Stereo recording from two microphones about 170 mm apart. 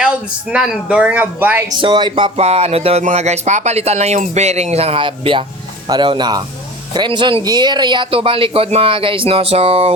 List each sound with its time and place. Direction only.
0.0 s speech: 5° right (ahead or behind)
1.8 s speech: 25° right (ahead or behind)